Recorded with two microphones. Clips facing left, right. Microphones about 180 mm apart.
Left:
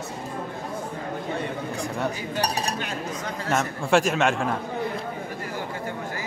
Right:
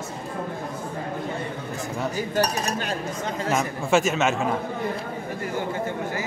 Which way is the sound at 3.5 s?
Centre (ahead or behind).